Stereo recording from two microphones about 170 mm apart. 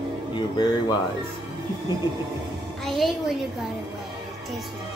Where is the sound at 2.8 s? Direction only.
Centre (ahead or behind).